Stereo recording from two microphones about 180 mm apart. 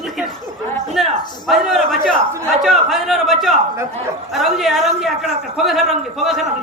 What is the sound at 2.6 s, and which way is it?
Speech, centre (ahead or behind).